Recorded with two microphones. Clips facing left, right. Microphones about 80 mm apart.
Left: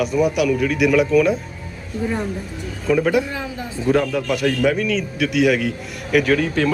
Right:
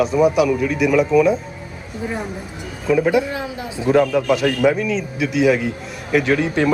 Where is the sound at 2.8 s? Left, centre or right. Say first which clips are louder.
Right 1 dB; centre.